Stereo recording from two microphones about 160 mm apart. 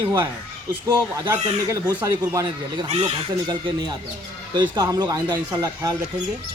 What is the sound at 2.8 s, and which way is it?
Speech, 40° right (ahead or behind).